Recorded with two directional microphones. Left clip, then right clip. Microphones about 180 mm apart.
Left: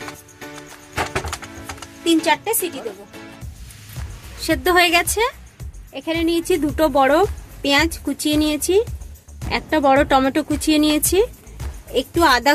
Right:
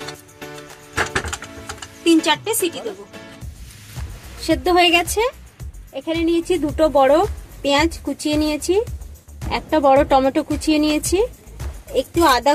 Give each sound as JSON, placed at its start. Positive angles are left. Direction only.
{"t": 2.0, "sound": "speech", "side_deg": 20}
{"t": 4.4, "sound": "a woman's voice", "side_deg": 20}